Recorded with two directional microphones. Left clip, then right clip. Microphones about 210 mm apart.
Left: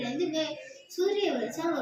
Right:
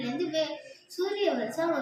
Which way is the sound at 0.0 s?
15° right (ahead or behind).